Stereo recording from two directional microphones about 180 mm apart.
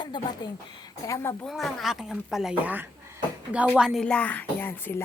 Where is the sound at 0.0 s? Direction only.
25° left (ahead or behind).